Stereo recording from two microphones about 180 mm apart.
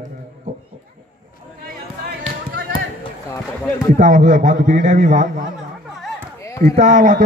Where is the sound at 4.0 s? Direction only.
50° right (ahead or behind).